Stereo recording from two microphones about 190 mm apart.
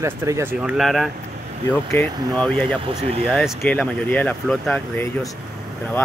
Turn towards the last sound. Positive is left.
turn(degrees=5)  # may be behind; listen again after turning